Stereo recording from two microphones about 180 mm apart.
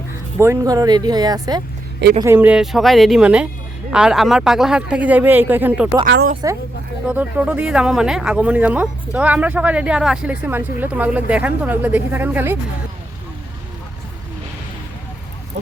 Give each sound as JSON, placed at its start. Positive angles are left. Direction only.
{"t": 0.3, "sound": "speech", "side_deg": -15}
{"t": 2.2, "sound": "speech", "side_deg": -10}
{"t": 6.1, "sound": "speech", "side_deg": -65}
{"t": 7.1, "sound": "speech", "side_deg": -10}